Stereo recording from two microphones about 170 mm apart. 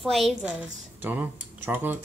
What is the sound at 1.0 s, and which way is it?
Speech, 10° right (ahead or behind).